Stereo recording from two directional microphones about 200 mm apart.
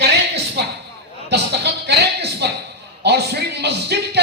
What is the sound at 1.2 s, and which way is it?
Speech, 55° right (ahead or behind).